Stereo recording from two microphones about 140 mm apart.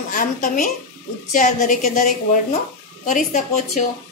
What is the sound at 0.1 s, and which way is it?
A woman's voice, 70° left (ahead or behind).